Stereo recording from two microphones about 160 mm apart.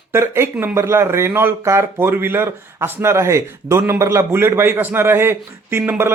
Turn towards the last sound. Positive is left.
turn(degrees=-15)  # may be behind; listen again after turning